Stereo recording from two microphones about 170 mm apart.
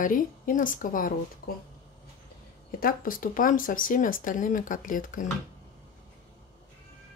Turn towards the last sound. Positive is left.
turn(degrees=50)  # may be behind; listen again after turning